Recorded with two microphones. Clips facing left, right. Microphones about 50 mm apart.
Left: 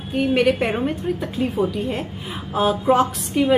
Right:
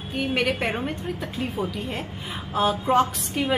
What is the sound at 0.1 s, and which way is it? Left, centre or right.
A woman's voice, centre.